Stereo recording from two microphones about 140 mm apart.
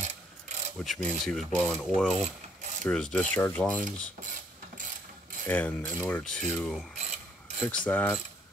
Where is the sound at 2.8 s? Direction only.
5° left (ahead or behind).